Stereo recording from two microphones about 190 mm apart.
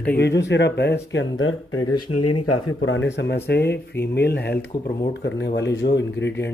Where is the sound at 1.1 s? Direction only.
85° left.